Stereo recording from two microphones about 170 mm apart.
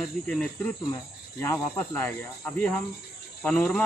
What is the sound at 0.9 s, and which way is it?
Speech, 15° left (ahead or behind).